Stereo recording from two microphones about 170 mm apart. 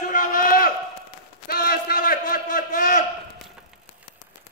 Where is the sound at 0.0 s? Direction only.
50° left (ahead or behind).